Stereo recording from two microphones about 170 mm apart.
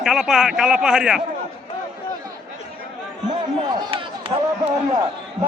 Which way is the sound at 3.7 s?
30° right (ahead or behind).